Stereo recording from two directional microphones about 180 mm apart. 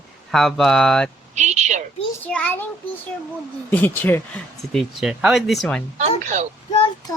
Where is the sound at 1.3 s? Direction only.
40° right (ahead or behind).